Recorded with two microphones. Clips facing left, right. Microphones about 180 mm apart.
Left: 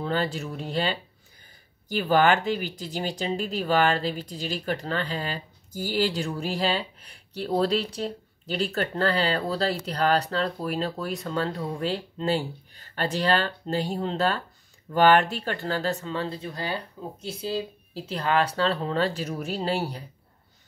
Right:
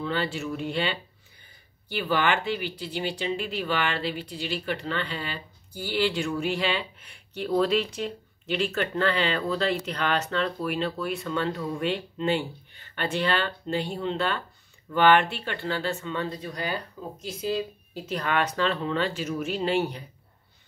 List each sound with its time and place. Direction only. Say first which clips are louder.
0.0 s speech: left 1 dB; 40° left (ahead or behind)